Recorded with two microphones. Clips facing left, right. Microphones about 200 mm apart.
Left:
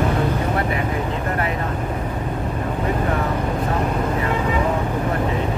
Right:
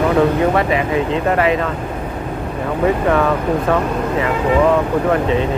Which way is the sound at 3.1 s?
90° right.